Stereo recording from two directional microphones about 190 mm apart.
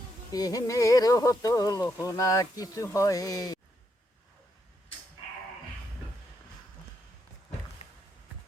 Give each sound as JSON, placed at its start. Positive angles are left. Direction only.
{"t": 0.3, "sound": "speech", "side_deg": 20}